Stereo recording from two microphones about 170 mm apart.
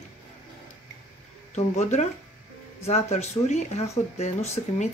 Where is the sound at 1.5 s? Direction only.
40° left (ahead or behind).